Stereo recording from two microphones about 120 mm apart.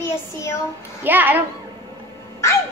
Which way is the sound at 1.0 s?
15° right (ahead or behind).